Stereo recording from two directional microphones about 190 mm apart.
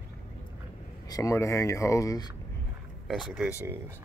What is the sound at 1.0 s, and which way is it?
Speech, 20° left (ahead or behind).